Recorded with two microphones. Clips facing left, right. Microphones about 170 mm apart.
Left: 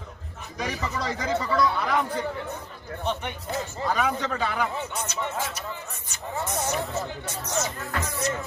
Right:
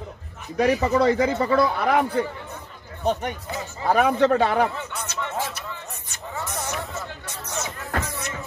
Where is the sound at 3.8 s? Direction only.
60° right (ahead or behind).